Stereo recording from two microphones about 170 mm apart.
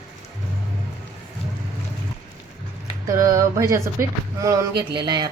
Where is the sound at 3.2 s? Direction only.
20° right (ahead or behind).